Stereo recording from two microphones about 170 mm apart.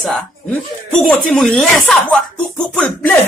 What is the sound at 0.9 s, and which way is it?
Speech, 5° left (ahead or behind).